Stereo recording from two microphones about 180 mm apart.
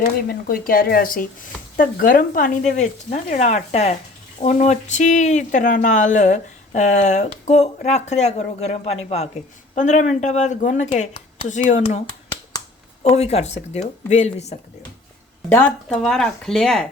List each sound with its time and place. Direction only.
0.0 s speech: 55° left (ahead or behind)
13.0 s speech: 35° left (ahead or behind)
15.4 s speech: 10° left (ahead or behind)